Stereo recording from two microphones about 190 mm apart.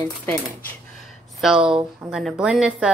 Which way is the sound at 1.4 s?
5° right (ahead or behind).